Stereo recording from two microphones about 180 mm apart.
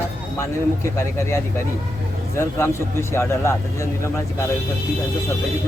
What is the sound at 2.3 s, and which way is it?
Speech, 15° left (ahead or behind).